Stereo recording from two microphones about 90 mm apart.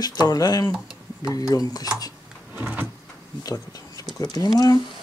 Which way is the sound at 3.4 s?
45° left (ahead or behind).